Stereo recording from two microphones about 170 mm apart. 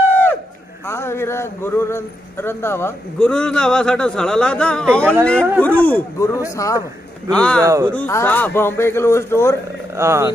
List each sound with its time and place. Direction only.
0.8 s a man's voice: 15° left (ahead or behind)
7.2 s a man's voice: 5° left (ahead or behind)
7.6 s speech: 20° right (ahead or behind)
7.9 s a man's voice: 10° left (ahead or behind)
9.9 s speech: 15° right (ahead or behind)